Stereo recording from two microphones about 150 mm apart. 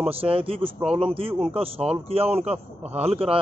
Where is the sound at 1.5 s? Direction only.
40° right (ahead or behind).